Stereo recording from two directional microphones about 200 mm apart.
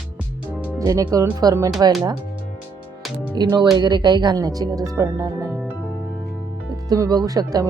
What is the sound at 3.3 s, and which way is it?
Speech, 20° right (ahead or behind).